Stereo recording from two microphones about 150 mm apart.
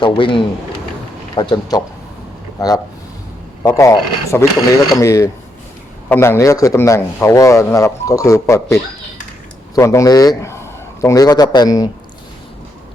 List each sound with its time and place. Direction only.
0.0 s a man's voice: 35° left (ahead or behind)